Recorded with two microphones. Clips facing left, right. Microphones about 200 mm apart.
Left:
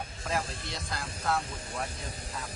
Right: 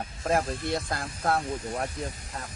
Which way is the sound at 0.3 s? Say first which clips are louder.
Right 8 dB; 50° right (ahead or behind).